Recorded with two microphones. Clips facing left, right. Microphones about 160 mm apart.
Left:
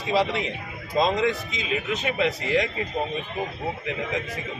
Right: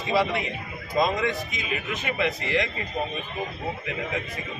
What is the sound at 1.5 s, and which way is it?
Speech, 25° left (ahead or behind).